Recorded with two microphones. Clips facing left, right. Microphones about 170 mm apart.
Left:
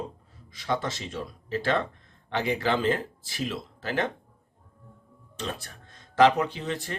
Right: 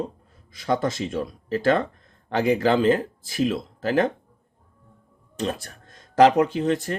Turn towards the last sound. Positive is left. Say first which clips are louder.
# right 9 dB
turn(degrees=-45)  # may be behind; listen again after turning